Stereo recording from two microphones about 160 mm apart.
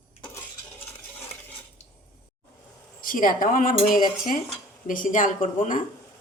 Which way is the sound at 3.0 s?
60° left (ahead or behind).